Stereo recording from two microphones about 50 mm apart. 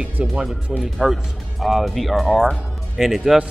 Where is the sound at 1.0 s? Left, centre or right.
Centre.